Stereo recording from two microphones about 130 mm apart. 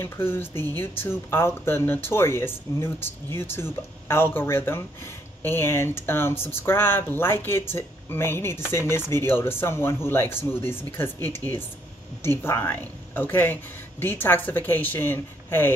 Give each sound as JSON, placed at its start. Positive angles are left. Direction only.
{"t": 0.0, "sound": "speech", "side_deg": 15}